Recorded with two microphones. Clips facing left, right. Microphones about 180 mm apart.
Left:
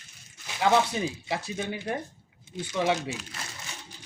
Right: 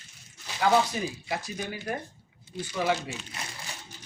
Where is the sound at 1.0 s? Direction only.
25° left (ahead or behind).